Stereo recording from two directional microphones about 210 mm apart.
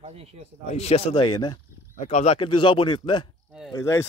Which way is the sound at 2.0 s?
30° left (ahead or behind).